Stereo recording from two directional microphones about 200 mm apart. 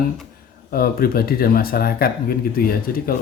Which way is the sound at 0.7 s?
50° left (ahead or behind).